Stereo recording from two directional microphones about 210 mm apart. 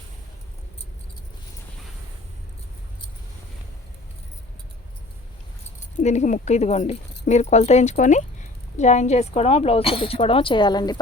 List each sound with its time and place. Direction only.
6.0 s speech: 35° left (ahead or behind)